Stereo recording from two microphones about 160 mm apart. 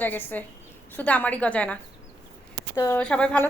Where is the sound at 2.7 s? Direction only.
20° left (ahead or behind).